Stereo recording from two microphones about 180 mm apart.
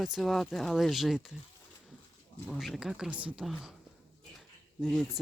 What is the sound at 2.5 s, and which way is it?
Speech, centre (ahead or behind).